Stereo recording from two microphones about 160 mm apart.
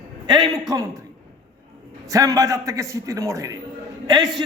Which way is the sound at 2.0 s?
20° right (ahead or behind).